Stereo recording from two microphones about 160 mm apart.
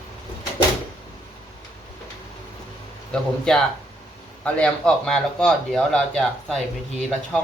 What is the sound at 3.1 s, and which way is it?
Speech, 5° left (ahead or behind).